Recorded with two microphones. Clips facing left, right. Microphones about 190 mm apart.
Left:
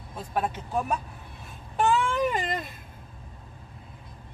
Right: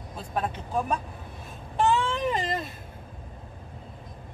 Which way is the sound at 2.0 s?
30° right (ahead or behind).